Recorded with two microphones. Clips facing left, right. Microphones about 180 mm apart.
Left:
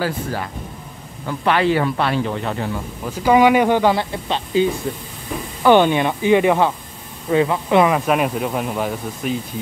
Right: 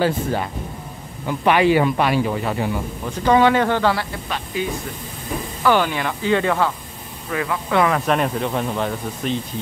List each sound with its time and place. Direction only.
0.0 s a man's voice: 20° right (ahead or behind)
3.1 s speech: 10° left (ahead or behind)
8.1 s speech: 5° left (ahead or behind)